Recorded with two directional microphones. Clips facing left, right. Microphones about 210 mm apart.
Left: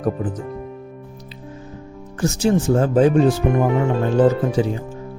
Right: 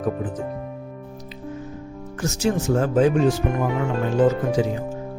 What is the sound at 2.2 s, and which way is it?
Speech, 30° left (ahead or behind).